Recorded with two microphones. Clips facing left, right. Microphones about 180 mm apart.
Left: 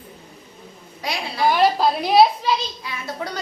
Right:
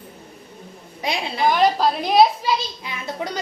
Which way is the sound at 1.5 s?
5° left (ahead or behind).